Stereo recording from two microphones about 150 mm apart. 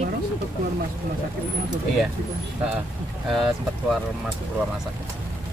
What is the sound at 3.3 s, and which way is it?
Speech, centre (ahead or behind).